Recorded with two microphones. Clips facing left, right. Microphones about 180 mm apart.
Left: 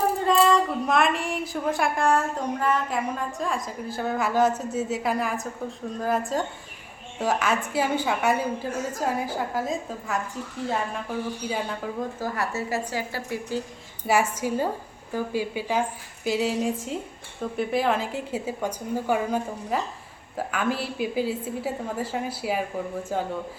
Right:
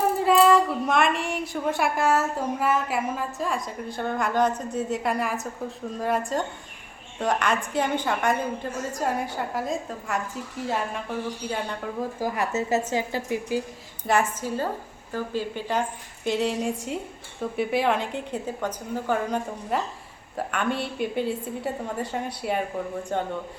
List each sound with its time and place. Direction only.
0.2 s speech: 5° right (ahead or behind)
12.2 s a woman's voice: 15° right (ahead or behind)
14.1 s a woman's voice: 10° left (ahead or behind)
19.7 s speech: centre (ahead or behind)